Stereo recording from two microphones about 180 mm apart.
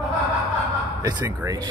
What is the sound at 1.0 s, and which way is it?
Speech, 20° right (ahead or behind).